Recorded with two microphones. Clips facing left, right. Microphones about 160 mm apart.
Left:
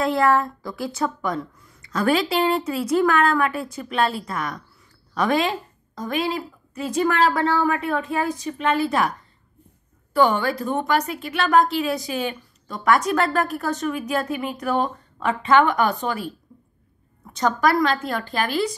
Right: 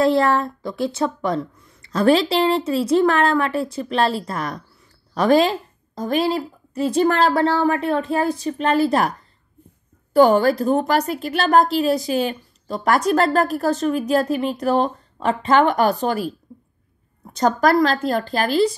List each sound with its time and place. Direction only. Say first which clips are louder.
0.0 s a woman's voice: right 3 dB; 30° right (ahead or behind)
10.1 s a woman's voice: right 6 dB; 40° right (ahead or behind)
17.3 s a woman's voice: right 3 dB; 35° right (ahead or behind)